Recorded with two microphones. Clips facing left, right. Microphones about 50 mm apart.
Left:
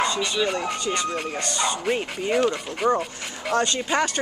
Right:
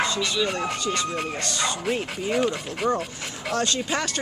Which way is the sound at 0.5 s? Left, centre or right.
Centre.